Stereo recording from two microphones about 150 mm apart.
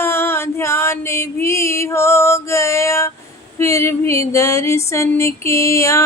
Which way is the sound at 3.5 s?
20° left (ahead or behind).